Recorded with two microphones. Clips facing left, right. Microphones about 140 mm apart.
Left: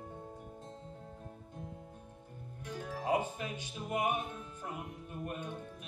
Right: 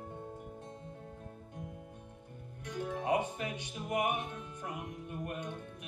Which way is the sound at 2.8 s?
65° right (ahead or behind).